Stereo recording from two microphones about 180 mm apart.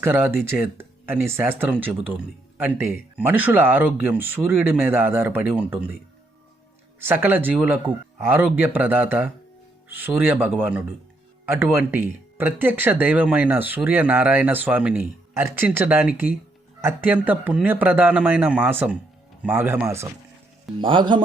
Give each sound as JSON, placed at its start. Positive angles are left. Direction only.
{"t": 0.0, "sound": "speech", "side_deg": -10}
{"t": 7.0, "sound": "speech", "side_deg": -10}
{"t": 20.7, "sound": "speech", "side_deg": -25}